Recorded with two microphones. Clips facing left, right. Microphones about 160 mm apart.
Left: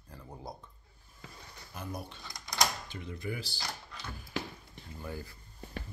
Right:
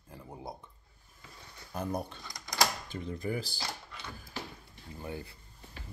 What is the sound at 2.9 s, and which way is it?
Speech, 40° right (ahead or behind).